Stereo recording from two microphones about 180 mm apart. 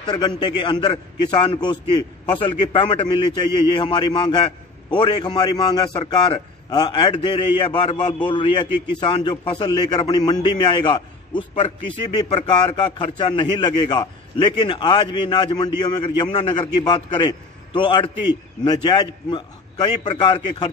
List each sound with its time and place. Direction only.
0.0 s a man's voice: 25° left (ahead or behind)